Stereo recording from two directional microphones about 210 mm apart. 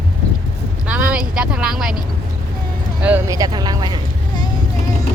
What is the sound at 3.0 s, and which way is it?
Speech, 10° right (ahead or behind).